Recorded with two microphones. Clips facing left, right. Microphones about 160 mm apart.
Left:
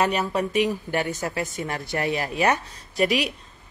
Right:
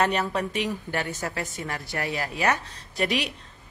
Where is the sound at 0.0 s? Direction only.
10° left (ahead or behind).